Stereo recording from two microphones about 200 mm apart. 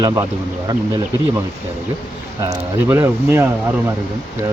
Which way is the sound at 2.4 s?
10° right (ahead or behind).